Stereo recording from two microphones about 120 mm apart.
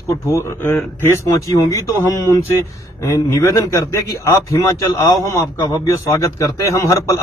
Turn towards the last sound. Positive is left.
turn(degrees=25)  # may be behind; listen again after turning